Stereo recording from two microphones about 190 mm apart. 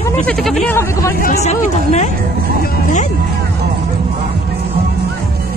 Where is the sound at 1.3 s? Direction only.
35° left (ahead or behind).